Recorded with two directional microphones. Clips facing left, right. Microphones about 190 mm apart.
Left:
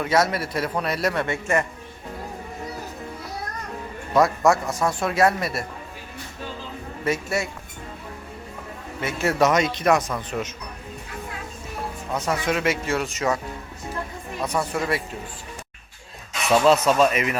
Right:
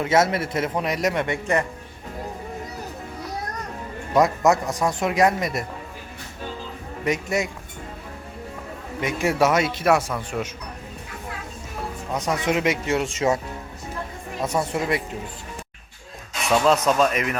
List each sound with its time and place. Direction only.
0.0 s a man's voice: 25° right (ahead or behind)
4.1 s a man's voice: 20° right (ahead or behind)
7.0 s a man's voice: 15° right (ahead or behind)
9.0 s a man's voice: 15° right (ahead or behind)
12.1 s a man's voice: 15° right (ahead or behind)
14.4 s a man's voice: 25° right (ahead or behind)
16.6 s speech: 5° left (ahead or behind)